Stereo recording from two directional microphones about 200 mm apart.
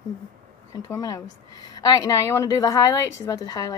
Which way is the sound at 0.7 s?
15° left (ahead or behind).